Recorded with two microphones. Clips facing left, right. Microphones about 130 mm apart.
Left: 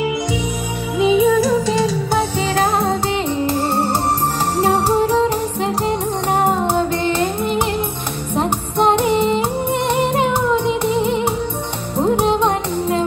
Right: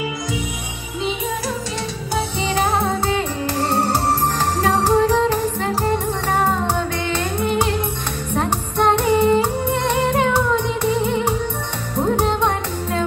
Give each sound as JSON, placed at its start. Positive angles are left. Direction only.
{"t": 2.4, "sound": "music", "side_deg": 30}